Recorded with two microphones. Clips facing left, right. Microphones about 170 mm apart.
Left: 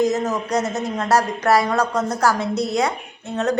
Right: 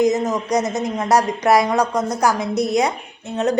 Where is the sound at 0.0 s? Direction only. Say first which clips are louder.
Right 2 dB; 15° right (ahead or behind).